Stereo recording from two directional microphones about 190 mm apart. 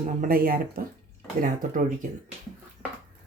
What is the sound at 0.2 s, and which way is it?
Speech, 50° right (ahead or behind).